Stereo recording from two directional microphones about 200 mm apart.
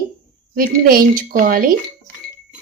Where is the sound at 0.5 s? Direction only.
45° right (ahead or behind).